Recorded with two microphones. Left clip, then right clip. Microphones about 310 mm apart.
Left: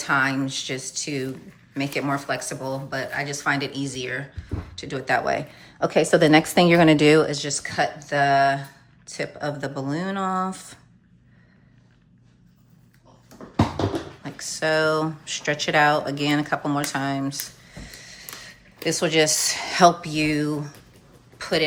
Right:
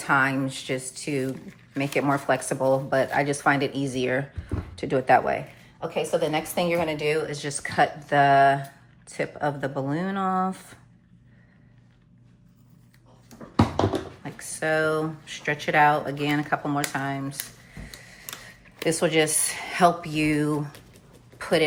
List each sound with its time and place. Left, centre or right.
0.0 s speech: centre
5.8 s speech: left
7.3 s speech: centre
14.3 s speech: centre